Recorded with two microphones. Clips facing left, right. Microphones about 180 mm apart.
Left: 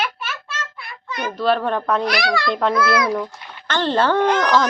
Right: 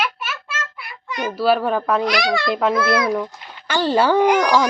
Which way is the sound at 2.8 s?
25° right (ahead or behind).